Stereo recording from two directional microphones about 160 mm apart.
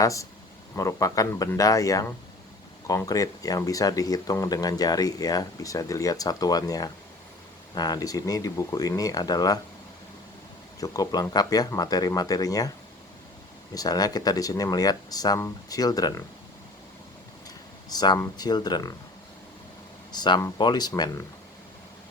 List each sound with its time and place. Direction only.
0.0 s speech: 20° left (ahead or behind)
10.8 s speech: 20° left (ahead or behind)
13.7 s speech: 25° left (ahead or behind)
17.8 s speech: 25° left (ahead or behind)
20.1 s speech: 25° left (ahead or behind)